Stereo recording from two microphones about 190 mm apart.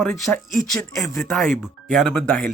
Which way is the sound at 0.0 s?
5° left (ahead or behind).